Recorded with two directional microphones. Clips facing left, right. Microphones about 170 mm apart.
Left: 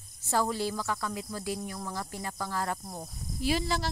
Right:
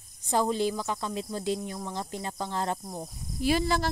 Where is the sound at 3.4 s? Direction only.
55° right (ahead or behind).